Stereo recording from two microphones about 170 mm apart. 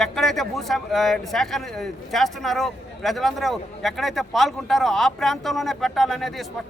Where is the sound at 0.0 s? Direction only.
Centre (ahead or behind).